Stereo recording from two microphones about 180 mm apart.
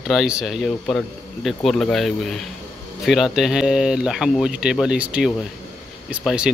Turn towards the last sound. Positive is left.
turn(degrees=-5)  # may be behind; listen again after turning